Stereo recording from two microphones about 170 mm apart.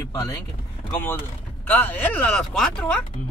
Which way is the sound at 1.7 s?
10° left (ahead or behind).